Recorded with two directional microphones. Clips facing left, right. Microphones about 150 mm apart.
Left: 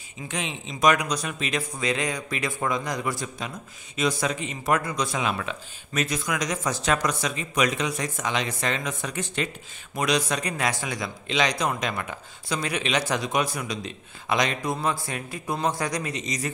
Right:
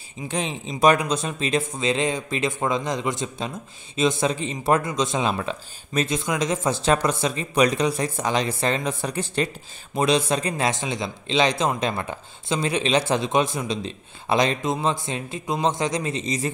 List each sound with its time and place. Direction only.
0.3 s a man's voice: 35° right (ahead or behind)